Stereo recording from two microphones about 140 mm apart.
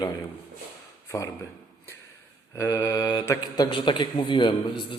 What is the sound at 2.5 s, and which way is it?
Mantra, 20° left (ahead or behind).